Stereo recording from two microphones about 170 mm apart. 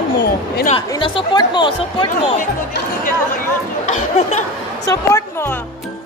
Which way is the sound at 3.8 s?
40° left (ahead or behind).